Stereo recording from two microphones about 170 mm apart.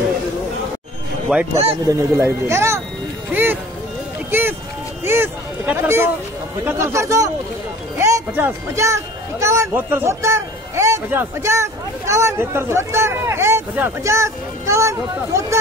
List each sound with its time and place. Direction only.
1.3 s speech: 5° right (ahead or behind)
5.0 s a sound: 15° right (ahead or behind)
6.6 s speech: 15° right (ahead or behind)